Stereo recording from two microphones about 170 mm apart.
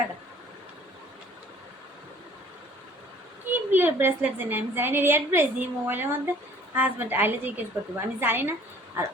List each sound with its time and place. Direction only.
3.5 s a woman's voice: 10° right (ahead or behind)